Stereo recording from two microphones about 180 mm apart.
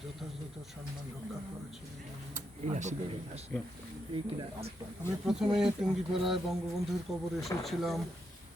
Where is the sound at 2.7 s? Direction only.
40° right (ahead or behind).